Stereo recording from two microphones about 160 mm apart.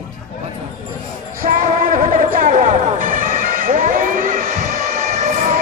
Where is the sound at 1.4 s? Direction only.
60° right (ahead or behind).